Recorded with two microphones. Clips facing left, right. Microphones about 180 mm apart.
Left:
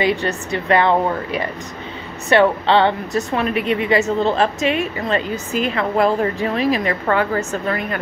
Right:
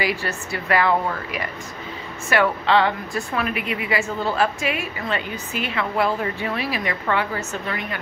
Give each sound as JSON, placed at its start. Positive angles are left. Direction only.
{"t": 0.3, "sound": "a woman's voice", "side_deg": 30}